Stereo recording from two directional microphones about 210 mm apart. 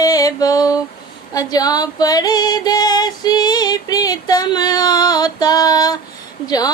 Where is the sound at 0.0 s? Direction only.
15° left (ahead or behind).